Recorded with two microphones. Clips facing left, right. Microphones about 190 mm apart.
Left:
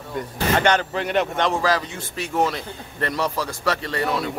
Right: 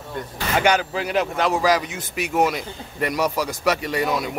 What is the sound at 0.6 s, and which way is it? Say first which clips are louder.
Speech: right 2 dB; 5° right (ahead or behind).